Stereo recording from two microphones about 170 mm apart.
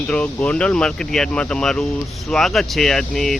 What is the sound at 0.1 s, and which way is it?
Speech, 5° left (ahead or behind).